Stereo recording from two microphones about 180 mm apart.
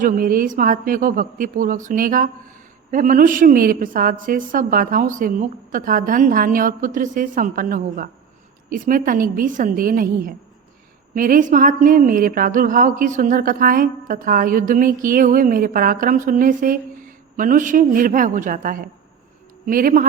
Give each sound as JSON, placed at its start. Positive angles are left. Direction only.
{"t": 0.0, "sound": "a woman's voice", "side_deg": -50}